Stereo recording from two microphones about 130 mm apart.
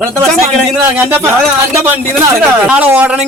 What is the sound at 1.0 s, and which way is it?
Speech, 15° right (ahead or behind).